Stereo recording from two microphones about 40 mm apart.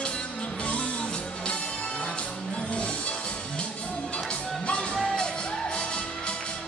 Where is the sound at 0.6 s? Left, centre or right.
Left.